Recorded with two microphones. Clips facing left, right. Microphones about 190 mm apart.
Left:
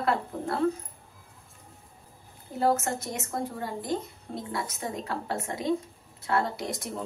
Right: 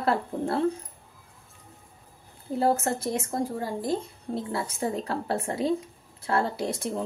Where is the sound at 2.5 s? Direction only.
30° right (ahead or behind).